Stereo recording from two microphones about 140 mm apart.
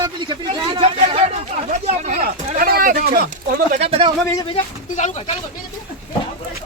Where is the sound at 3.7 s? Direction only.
45° right (ahead or behind).